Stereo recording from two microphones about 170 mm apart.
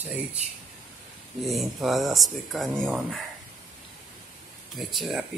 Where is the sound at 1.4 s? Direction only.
Centre (ahead or behind).